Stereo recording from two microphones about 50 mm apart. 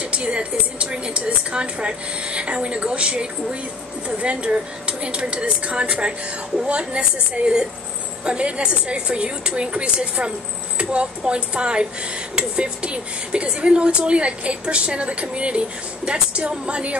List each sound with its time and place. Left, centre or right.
0.0 s a woman's voice: right